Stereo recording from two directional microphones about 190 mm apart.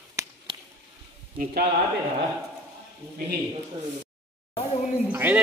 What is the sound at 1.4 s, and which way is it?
Speech, 55° right (ahead or behind).